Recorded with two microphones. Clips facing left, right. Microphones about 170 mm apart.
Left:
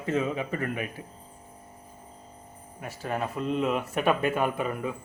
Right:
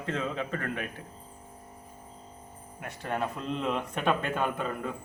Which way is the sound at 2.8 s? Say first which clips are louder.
Left 1 dB; 5° left (ahead or behind).